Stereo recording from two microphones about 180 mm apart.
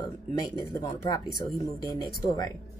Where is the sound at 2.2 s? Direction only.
20° left (ahead or behind).